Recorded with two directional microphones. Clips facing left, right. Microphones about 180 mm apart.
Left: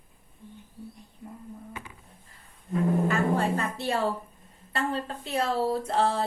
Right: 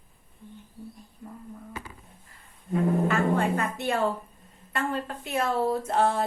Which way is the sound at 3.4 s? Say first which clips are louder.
Right 1 dB; 35° left (ahead or behind).